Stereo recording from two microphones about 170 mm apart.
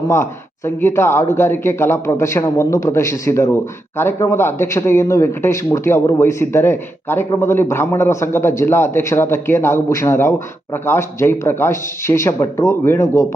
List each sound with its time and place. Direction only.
0.1 s speech: 15° left (ahead or behind)